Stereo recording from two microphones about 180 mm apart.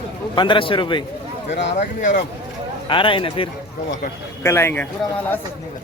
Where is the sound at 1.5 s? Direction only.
75° left (ahead or behind).